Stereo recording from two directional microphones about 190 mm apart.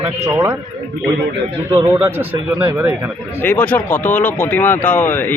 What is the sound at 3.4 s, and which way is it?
Speech, 10° left (ahead or behind).